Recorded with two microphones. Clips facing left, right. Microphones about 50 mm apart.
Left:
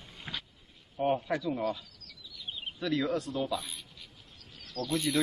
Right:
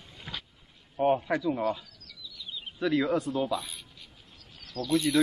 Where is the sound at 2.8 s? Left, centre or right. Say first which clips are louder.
Right 4 dB; centre.